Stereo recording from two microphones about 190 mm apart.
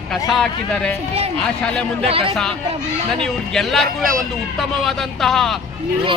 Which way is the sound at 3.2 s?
Centre (ahead or behind).